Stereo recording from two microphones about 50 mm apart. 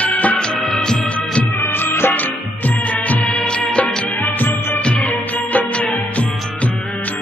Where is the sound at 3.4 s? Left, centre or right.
Centre.